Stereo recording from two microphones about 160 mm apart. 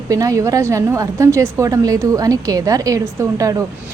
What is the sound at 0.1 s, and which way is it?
A woman's voice, 20° right (ahead or behind).